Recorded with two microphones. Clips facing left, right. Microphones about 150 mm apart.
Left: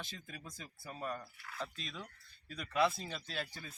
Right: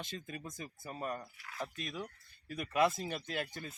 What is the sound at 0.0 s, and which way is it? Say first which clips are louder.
Speech: right 5 dB; 20° right (ahead or behind).